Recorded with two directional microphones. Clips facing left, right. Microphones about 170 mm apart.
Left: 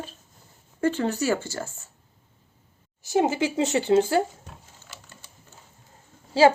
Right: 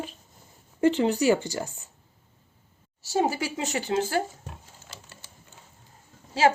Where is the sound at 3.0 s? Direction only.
20° left (ahead or behind).